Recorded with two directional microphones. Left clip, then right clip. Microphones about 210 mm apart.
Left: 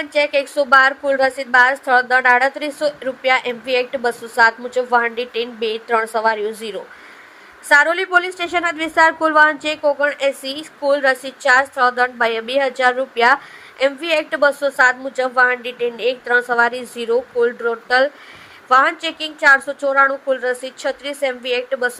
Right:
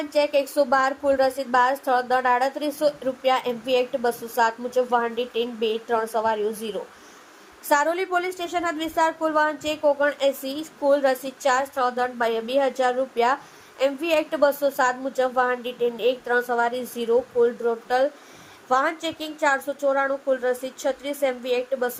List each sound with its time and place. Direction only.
0.0 s a woman's voice: 15° left (ahead or behind)